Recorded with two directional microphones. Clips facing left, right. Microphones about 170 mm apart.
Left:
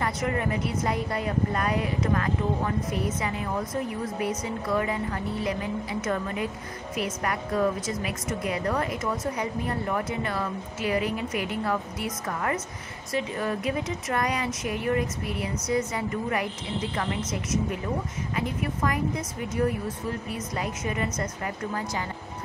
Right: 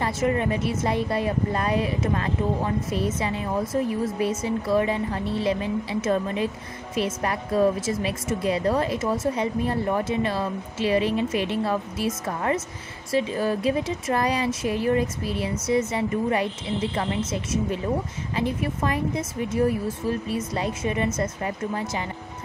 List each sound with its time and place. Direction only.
0.0 s a woman's voice: 25° right (ahead or behind)